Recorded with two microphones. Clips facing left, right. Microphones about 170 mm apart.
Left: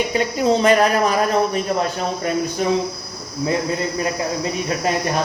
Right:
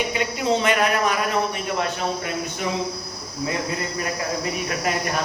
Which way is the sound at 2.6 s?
35° left (ahead or behind).